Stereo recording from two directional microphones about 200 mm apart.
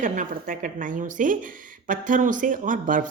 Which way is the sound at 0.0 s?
40° right (ahead or behind).